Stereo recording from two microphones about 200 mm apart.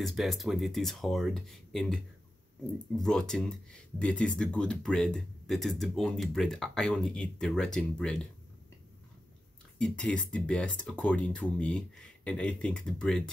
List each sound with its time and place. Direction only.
0.0 s speech: centre (ahead or behind)
3.0 s speech: 5° left (ahead or behind)
9.8 s speech: 5° left (ahead or behind)